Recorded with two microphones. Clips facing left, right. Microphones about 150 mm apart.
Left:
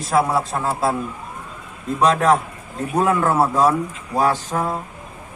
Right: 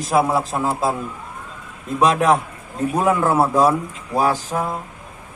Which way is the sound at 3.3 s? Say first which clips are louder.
Right 1 dB; 5° right (ahead or behind).